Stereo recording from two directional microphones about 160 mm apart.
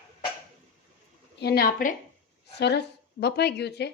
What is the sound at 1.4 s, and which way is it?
Speech, 80° left.